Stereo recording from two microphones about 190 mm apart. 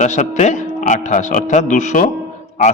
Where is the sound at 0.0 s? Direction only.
40° left (ahead or behind).